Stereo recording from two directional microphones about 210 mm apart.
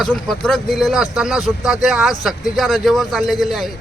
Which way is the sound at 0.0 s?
Centre (ahead or behind).